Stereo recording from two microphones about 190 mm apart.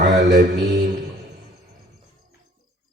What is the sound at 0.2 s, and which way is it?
Mantra, 65° right (ahead or behind).